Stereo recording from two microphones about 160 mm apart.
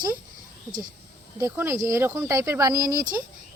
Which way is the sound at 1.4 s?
20° right (ahead or behind).